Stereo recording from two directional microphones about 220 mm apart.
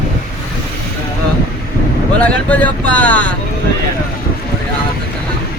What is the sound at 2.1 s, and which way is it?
Speech, 5° left (ahead or behind).